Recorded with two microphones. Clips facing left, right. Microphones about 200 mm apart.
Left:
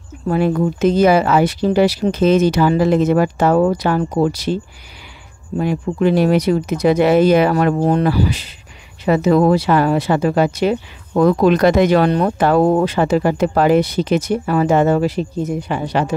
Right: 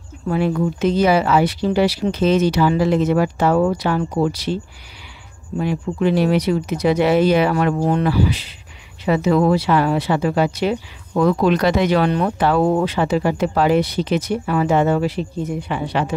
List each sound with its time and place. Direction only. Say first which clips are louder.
0.3 s speech: left 3 dB; 45° left (ahead or behind)
5.6 s speech: left 3 dB; 45° left (ahead or behind)